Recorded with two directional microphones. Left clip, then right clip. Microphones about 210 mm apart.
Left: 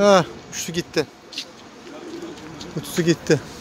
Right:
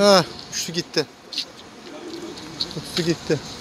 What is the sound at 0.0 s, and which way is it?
Speech, 10° left (ahead or behind).